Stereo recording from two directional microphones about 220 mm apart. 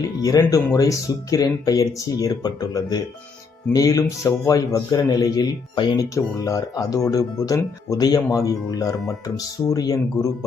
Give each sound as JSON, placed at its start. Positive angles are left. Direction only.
{"t": 0.2, "sound": "speech", "side_deg": 15}